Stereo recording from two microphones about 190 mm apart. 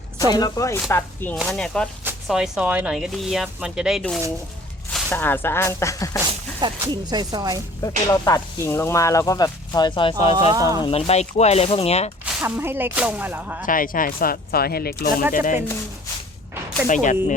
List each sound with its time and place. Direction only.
0.2 s speech: 20° left (ahead or behind)
6.6 s speech: 20° right (ahead or behind)
7.8 s speech: 15° left (ahead or behind); by 12.1 s 35° left (ahead or behind)
12.2 s speech: 10° right (ahead or behind)
13.7 s speech: 45° left (ahead or behind)
16.9 s speech: 40° left (ahead or behind)